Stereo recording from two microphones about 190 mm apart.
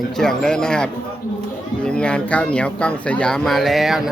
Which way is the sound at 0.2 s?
5° left (ahead or behind).